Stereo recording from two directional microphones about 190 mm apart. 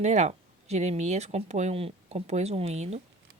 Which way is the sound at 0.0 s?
35° right (ahead or behind).